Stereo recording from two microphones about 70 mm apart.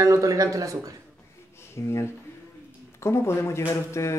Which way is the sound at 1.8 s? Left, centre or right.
Left.